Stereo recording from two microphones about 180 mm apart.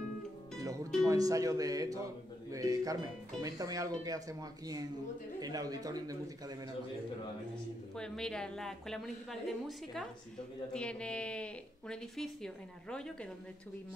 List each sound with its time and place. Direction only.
0.6 s speech: 20° right (ahead or behind)
7.9 s a woman's voice: 5° left (ahead or behind)